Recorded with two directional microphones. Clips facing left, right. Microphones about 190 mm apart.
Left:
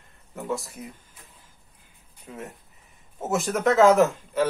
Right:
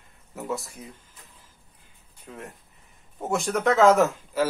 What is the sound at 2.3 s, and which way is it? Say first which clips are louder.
Speech: left 2 dB; 5° left (ahead or behind).